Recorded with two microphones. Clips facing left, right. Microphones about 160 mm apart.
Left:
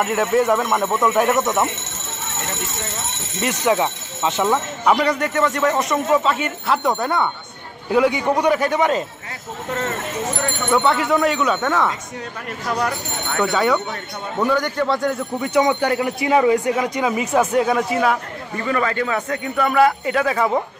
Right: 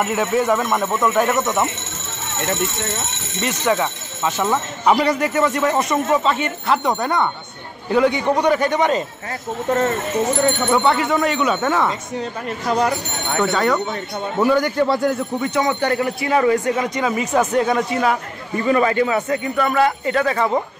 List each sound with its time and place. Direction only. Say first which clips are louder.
0.0 s speech: left 1 dB; centre (ahead or behind)
3.3 s a man's voice: left 1 dB; 10° left (ahead or behind)
4.5 s a man's voice: right 1 dB; 5° right (ahead or behind)
10.7 s speech: even; centre (ahead or behind)
12.6 s speech: right 3 dB; 25° right (ahead or behind)
13.5 s a man's voice: left 1 dB; 5° left (ahead or behind)
14.4 s a man's voice: right 3 dB; 10° right (ahead or behind)
15.4 s a man's voice: left 3 dB; 15° left (ahead or behind)
18.7 s speech: right 4 dB; 20° right (ahead or behind); by 20.6 s 5° left (ahead or behind)